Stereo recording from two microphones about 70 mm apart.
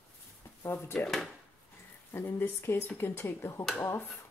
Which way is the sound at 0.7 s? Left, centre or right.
Left.